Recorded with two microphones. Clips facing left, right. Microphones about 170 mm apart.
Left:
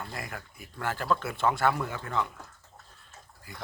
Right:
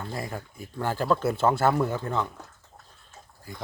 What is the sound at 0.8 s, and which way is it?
Speech, 30° right (ahead or behind).